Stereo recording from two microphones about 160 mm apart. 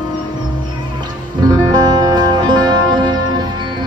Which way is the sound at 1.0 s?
25° right (ahead or behind).